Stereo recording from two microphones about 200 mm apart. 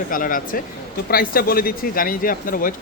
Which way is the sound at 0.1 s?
45° left (ahead or behind).